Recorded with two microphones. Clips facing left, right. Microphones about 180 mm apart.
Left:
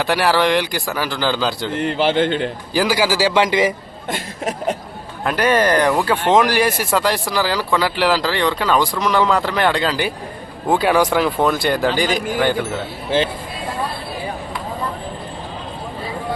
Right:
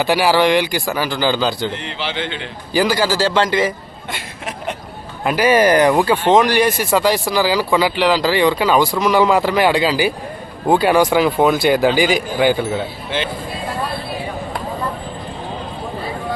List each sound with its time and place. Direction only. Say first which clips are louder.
0.0 s speech: right 2 dB; centre (ahead or behind)
1.7 s speech: left 8 dB; 50° left (ahead or behind)
2.7 s a man's voice: right 1 dB; 10° left (ahead or behind)
4.1 s speech: left 5 dB; 40° left (ahead or behind)
5.2 s speech: right 3 dB; 5° right (ahead or behind)
6.2 s speech: right 1 dB; centre (ahead or behind)
13.1 s speech: left 5 dB; 40° left (ahead or behind)